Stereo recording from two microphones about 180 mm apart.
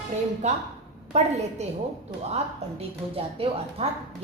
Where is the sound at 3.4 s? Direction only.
30° right (ahead or behind).